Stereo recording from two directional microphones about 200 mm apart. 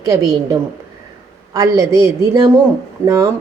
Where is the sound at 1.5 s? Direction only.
15° right (ahead or behind).